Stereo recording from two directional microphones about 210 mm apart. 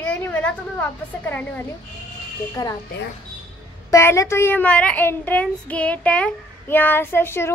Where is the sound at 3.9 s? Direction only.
15° left (ahead or behind).